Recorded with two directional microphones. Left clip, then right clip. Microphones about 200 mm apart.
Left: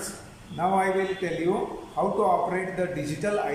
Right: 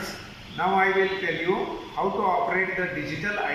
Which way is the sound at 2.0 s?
25° left (ahead or behind).